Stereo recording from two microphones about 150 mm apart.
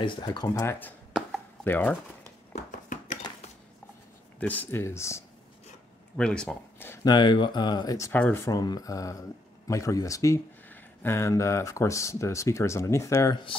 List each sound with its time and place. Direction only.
0.0 s speech: 30° left (ahead or behind); by 0.9 s 15° left (ahead or behind)
1.1 s chop: 10° left (ahead or behind)
2.5 s a sound: 55° left (ahead or behind)
4.4 s speech: 10° left (ahead or behind)
6.1 s speech: 5° left (ahead or behind)
7.1 s speech: 30° left (ahead or behind)
8.1 s speech: 15° left (ahead or behind)